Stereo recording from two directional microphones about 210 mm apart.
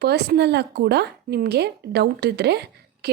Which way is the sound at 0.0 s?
50° right (ahead or behind).